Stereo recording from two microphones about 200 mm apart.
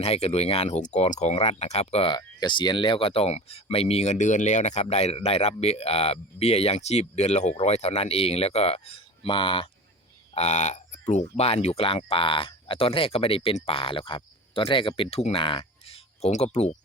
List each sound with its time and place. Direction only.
0.0 s speech: 30° left (ahead or behind)